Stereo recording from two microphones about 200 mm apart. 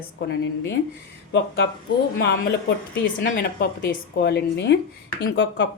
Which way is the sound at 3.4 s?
50° left (ahead or behind).